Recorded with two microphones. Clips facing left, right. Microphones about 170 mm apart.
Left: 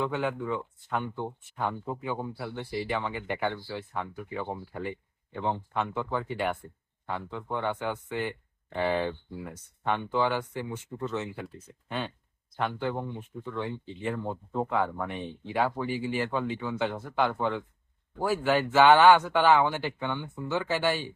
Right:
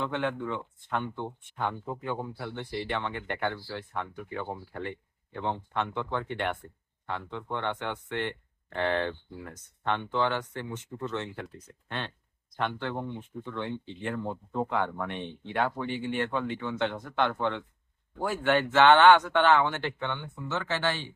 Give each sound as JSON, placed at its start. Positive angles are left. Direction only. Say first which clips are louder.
{"t": 0.0, "sound": "speech", "louder": "left 1 dB", "side_deg": 5}